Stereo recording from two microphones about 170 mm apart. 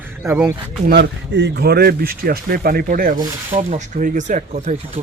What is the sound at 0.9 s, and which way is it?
Speech, 90° right.